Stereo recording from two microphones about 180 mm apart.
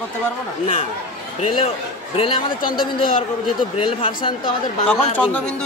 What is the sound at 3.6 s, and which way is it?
Speech, 30° left (ahead or behind).